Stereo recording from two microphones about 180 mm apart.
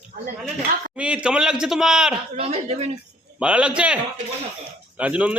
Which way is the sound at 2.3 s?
35° right (ahead or behind).